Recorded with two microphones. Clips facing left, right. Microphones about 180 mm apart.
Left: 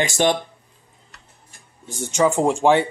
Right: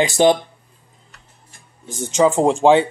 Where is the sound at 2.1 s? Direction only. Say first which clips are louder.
Right 3 dB; 20° right (ahead or behind).